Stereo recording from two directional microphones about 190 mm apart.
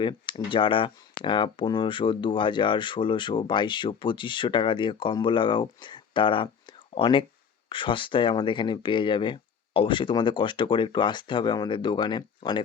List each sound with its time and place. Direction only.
0.0 s speech: 25° left (ahead or behind)